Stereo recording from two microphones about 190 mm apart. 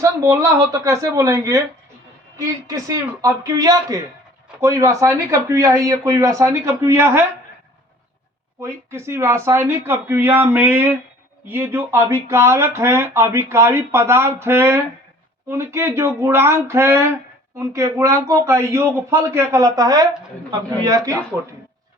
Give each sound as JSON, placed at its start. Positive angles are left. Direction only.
{"t": 0.0, "sound": "speech", "side_deg": -15}
{"t": 8.6, "sound": "a man's voice", "side_deg": -15}